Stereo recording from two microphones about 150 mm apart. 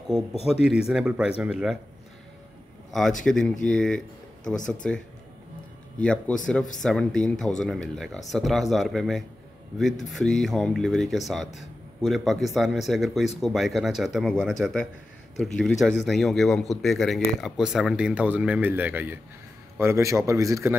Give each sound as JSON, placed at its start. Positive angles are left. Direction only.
{"t": 0.5, "sound": "speech", "side_deg": -5}
{"t": 3.3, "sound": "a man's voice", "side_deg": 5}